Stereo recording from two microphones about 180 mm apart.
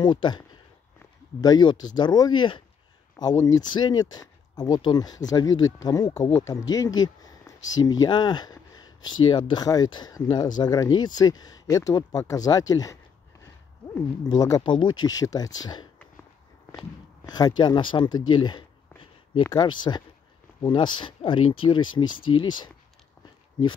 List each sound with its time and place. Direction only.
0.0 s speech: 25° left (ahead or behind)
1.4 s speech: 25° left (ahead or behind)
17.3 s speech: 25° left (ahead or behind)
23.6 s speech: 20° left (ahead or behind)